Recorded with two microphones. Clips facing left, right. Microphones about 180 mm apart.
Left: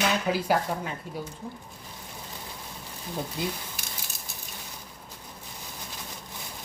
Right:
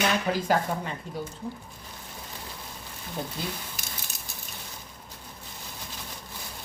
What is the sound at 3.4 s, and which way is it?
Speech, 15° left (ahead or behind).